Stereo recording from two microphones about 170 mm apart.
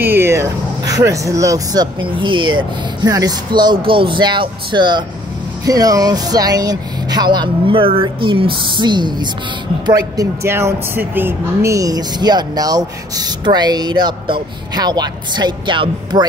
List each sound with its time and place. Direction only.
0.0 s speech: 15° right (ahead or behind)